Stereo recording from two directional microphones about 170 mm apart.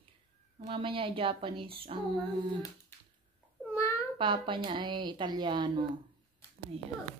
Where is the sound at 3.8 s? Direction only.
15° left (ahead or behind).